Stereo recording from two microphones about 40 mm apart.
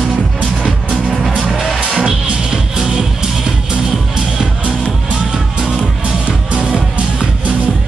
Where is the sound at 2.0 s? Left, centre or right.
Centre.